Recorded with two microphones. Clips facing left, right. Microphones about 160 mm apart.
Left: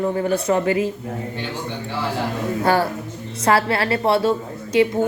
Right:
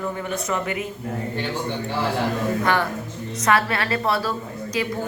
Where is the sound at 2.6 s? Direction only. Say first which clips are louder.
Left 4 dB; 30° left (ahead or behind).